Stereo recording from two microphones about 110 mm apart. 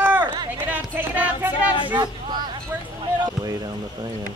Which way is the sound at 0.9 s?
15° right (ahead or behind).